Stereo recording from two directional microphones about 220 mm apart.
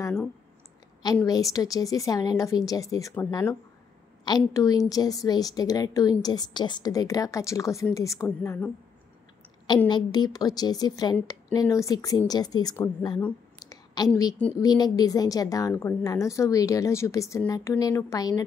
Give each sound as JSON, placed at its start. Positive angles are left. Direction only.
{"t": 1.0, "sound": "a woman's voice", "side_deg": 15}
{"t": 9.8, "sound": "a woman's voice", "side_deg": 20}
{"t": 13.2, "sound": "a sound", "side_deg": 15}
{"t": 14.6, "sound": "a woman's voice", "side_deg": 15}